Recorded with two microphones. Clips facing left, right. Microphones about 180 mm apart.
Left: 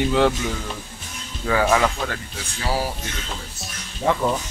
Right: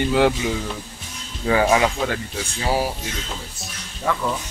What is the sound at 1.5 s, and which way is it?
Speech, 15° right (ahead or behind).